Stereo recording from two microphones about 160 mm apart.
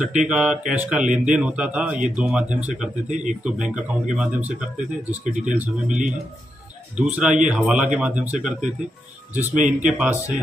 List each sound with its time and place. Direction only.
0.0 s speech: 50° right (ahead or behind)
0.3 s speech: 5° right (ahead or behind)
1.0 s speech: 50° right (ahead or behind)
1.3 s speech: 5° right (ahead or behind)
9.4 s speech: 50° right (ahead or behind)
9.8 s speech: 5° right (ahead or behind)